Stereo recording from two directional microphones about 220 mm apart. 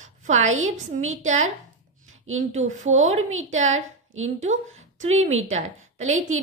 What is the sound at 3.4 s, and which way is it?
Speech, 30° right (ahead or behind).